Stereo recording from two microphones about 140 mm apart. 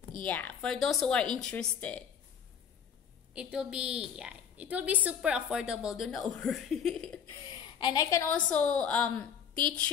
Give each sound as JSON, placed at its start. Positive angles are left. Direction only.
{"t": 0.2, "sound": "a woman's voice", "side_deg": 10}
{"t": 3.3, "sound": "a woman's voice", "side_deg": -5}
{"t": 7.4, "sound": "a sound", "side_deg": 30}
{"t": 8.5, "sound": "a woman's voice", "side_deg": 10}